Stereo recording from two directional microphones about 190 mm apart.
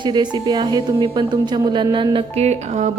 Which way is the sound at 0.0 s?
25° right (ahead or behind).